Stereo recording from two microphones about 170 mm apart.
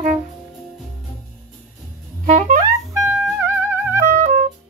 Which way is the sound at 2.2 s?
45° right (ahead or behind).